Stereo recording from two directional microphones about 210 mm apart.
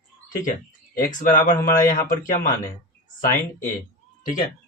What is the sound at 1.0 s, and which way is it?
Speech, 40° left (ahead or behind).